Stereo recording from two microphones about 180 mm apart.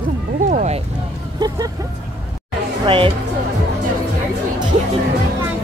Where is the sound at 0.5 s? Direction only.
45° right (ahead or behind).